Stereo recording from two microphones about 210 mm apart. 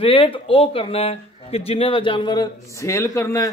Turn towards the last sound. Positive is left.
turn(degrees=15)  # may be behind; listen again after turning